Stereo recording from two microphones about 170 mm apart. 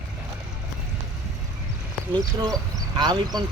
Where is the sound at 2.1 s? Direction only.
20° right (ahead or behind).